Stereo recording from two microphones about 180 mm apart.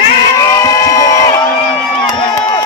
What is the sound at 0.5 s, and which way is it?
Crowd, 20° left (ahead or behind).